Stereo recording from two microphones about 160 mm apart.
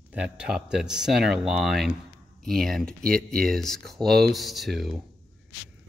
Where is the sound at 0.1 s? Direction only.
5° right (ahead or behind).